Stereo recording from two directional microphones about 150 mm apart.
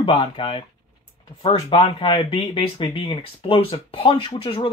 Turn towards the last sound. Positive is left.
turn(degrees=35)  # may be behind; listen again after turning